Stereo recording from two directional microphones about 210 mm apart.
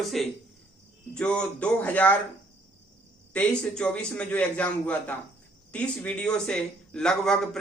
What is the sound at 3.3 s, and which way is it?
Speech, 5° left (ahead or behind).